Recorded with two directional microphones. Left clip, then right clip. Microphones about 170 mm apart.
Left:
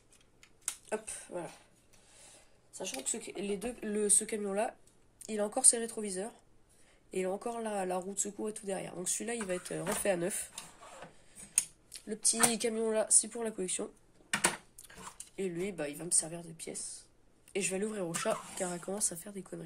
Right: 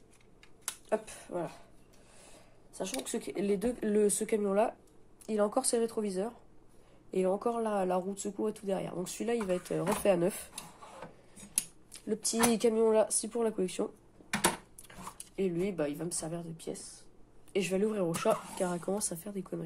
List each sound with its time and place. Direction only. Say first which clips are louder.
0.4 s finger snapping: even; 15° right (ahead or behind)
2.1 s speech: right 2 dB; 25° right (ahead or behind); by 10.5 s 10° right (ahead or behind)
11.9 s speech: right 2 dB; 15° right (ahead or behind)
15.1 s speech: right 4 dB; 10° right (ahead or behind)